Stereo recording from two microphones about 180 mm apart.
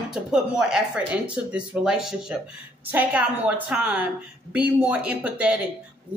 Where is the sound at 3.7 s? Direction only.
5° right (ahead or behind).